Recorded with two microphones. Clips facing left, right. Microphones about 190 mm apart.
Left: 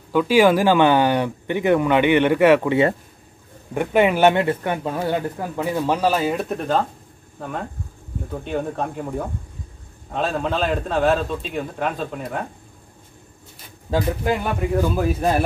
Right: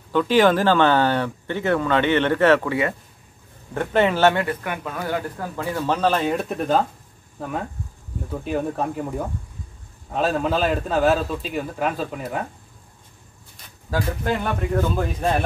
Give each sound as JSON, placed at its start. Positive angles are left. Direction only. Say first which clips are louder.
{"t": 0.1, "sound": "speech", "louder": "left 2 dB", "side_deg": 10}
{"t": 3.7, "sound": "speech", "louder": "left 2 dB", "side_deg": 15}
{"t": 8.3, "sound": "a man's voice", "louder": "right 1 dB", "side_deg": -5}
{"t": 10.1, "sound": "a man's voice", "louder": "right 1 dB", "side_deg": -5}
{"t": 13.8, "sound": "speech", "louder": "left 3 dB", "side_deg": 20}
{"t": 14.3, "sound": "speech", "louder": "even", "side_deg": 10}